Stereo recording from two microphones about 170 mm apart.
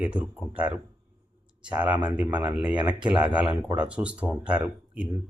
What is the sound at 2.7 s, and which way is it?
Speech, 25° right (ahead or behind).